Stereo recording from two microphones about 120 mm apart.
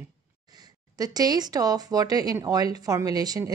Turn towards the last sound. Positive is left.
turn(degrees=-30)  # may be behind; listen again after turning